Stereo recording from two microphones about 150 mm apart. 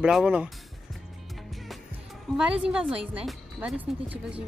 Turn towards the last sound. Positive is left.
turn(degrees=-10)  # may be behind; listen again after turning